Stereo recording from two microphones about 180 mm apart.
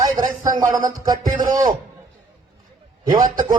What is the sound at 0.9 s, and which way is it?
Speech, 20° right (ahead or behind).